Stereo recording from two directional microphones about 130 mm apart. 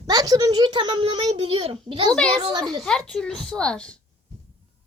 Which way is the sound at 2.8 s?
5° left (ahead or behind).